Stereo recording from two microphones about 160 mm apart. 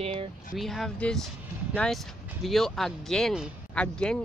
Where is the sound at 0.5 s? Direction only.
Centre (ahead or behind).